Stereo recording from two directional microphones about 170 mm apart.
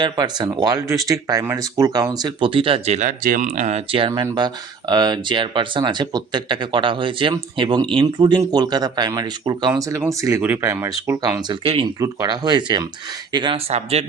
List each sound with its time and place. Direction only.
0.0 s speech: 25° right (ahead or behind)
11.9 s speech: 20° right (ahead or behind); by 14.0 s 35° right (ahead or behind)